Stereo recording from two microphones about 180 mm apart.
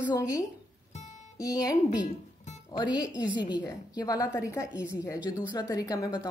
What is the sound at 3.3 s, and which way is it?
A woman's voice, 25° left (ahead or behind).